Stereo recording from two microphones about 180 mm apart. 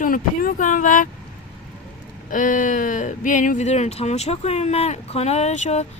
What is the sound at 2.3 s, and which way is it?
Speech, 45° left (ahead or behind).